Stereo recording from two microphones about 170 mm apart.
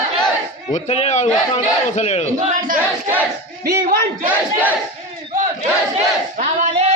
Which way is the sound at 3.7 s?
55° right (ahead or behind).